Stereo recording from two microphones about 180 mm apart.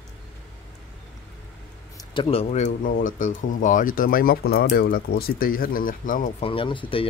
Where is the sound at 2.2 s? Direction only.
30° left (ahead or behind); by 6.4 s 45° left (ahead or behind).